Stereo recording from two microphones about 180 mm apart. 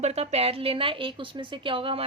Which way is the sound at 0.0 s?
35° right (ahead or behind).